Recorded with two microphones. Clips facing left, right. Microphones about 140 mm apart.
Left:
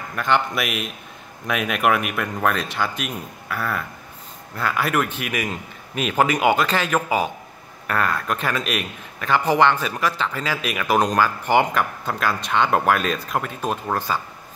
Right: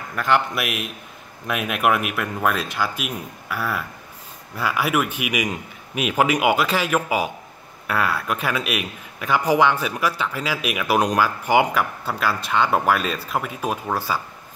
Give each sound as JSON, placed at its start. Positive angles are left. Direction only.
{"t": 0.1, "sound": "a man's voice", "side_deg": 0}